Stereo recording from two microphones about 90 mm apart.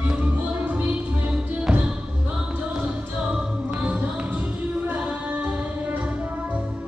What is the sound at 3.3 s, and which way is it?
Music, 15° right (ahead or behind).